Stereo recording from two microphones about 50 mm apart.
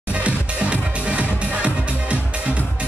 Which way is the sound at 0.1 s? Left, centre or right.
Right.